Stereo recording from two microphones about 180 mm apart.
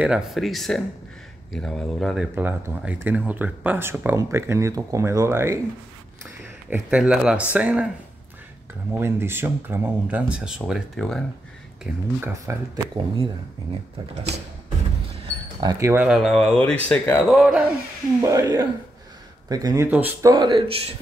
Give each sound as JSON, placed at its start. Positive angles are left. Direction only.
{"t": 0.0, "sound": "speech", "side_deg": -5}
{"t": 2.3, "sound": "speech", "side_deg": -10}
{"t": 6.7, "sound": "speech", "side_deg": -5}
{"t": 8.9, "sound": "speech", "side_deg": -15}
{"t": 11.8, "sound": "speech", "side_deg": -15}
{"t": 15.2, "sound": "speech", "side_deg": -20}
{"t": 17.4, "sound": "speech", "side_deg": -5}
{"t": 18.2, "sound": "speech", "side_deg": -15}